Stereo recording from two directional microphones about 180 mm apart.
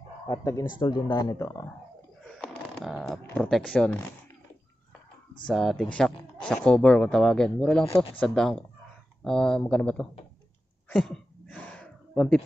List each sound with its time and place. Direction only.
0.3 s speech: 15° left (ahead or behind)
2.3 s speech: centre (ahead or behind)
5.5 s speech: centre (ahead or behind)
11.0 s a sound: 5° left (ahead or behind)